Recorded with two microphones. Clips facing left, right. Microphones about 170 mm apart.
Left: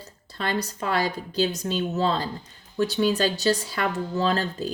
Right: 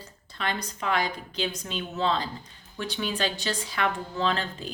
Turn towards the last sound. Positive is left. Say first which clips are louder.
# left 4 dB
turn(degrees=40)  # may be behind; listen again after turning